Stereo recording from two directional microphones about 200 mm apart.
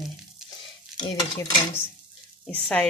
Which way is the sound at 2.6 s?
5° left (ahead or behind).